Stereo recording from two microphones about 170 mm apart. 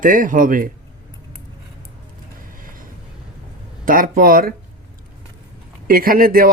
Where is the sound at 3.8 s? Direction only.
55° right (ahead or behind).